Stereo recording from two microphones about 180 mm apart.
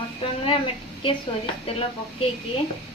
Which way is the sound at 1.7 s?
30° left (ahead or behind).